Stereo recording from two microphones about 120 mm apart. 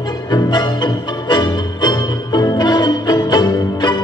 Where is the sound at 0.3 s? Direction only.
35° left (ahead or behind).